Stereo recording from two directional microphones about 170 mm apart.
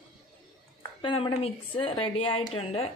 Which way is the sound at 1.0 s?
30° left (ahead or behind).